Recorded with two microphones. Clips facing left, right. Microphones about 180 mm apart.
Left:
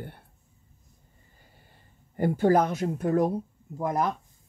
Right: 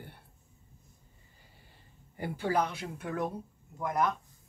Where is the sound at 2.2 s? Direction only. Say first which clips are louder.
Left 9 dB; 45° left (ahead or behind).